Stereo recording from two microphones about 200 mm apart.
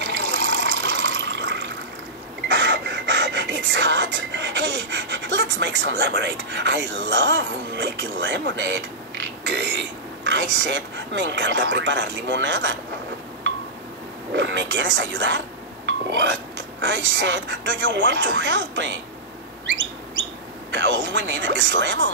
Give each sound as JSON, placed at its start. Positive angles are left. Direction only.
{"t": 0.0, "sound": "water", "side_deg": -65}
{"t": 2.4, "sound": "a sound", "side_deg": -65}
{"t": 14.3, "sound": "speech", "side_deg": -65}
{"t": 20.7, "sound": "speech", "side_deg": -65}